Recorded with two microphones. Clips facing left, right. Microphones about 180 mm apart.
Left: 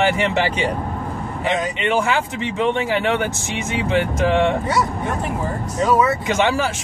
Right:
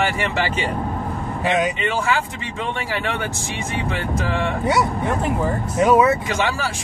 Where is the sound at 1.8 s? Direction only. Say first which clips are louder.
Left 2 dB; 20° left (ahead or behind).